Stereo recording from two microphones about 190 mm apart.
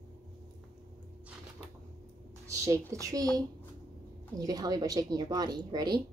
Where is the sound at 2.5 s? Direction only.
15° right (ahead or behind).